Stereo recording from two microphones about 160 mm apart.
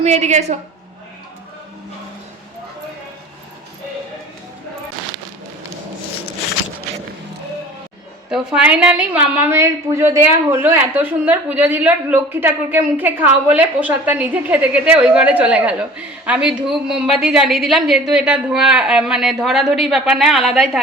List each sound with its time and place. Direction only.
0.0 s a woman's voice: 45° right (ahead or behind)
8.3 s a woman's voice: 5° right (ahead or behind)